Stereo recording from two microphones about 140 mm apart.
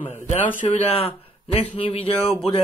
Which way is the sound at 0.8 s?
45° left (ahead or behind).